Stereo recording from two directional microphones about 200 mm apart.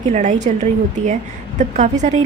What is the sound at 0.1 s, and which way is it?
A woman's voice, 35° right (ahead or behind).